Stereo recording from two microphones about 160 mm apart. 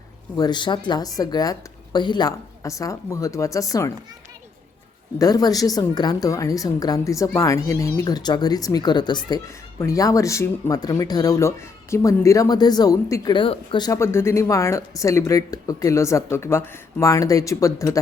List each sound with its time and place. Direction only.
0.3 s a woman's voice: 25° left (ahead or behind)
5.2 s a woman's voice: 25° left (ahead or behind)